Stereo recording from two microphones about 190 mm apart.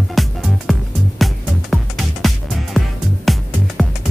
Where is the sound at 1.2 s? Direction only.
Centre (ahead or behind).